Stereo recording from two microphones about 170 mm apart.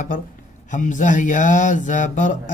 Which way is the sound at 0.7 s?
45° left (ahead or behind).